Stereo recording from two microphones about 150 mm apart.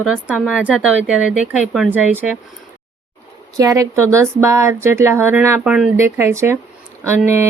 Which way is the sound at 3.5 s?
20° right (ahead or behind).